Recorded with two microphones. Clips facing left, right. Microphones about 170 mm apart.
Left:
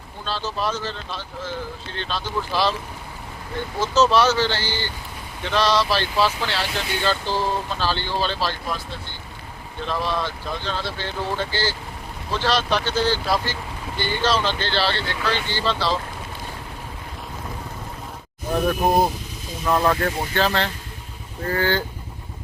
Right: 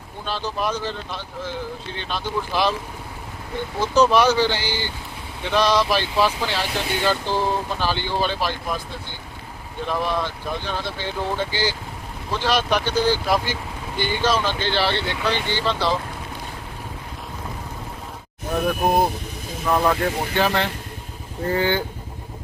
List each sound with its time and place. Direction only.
0.3 s speech: 15° right (ahead or behind)
3.8 s speech: 15° right (ahead or behind)
9.8 s speech: 15° right (ahead or behind)
19.6 s speech: 5° right (ahead or behind)